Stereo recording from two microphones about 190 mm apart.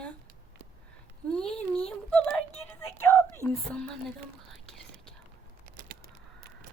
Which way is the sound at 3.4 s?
5° left (ahead or behind).